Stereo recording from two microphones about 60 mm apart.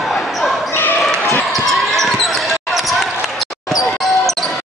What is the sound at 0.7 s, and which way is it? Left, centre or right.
Basketball bounce, left.